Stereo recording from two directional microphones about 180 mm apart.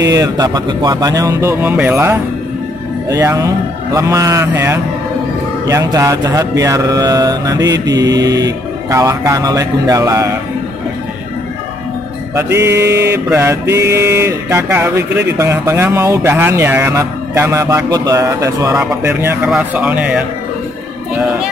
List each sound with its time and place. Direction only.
0.0 s speech: 20° right (ahead or behind)
12.4 s speech: 15° right (ahead or behind)